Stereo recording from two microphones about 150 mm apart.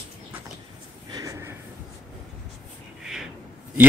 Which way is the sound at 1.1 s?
20° right (ahead or behind).